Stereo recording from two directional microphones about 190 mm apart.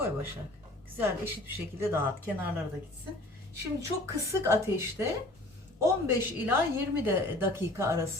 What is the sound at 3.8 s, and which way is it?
Speech, 15° right (ahead or behind).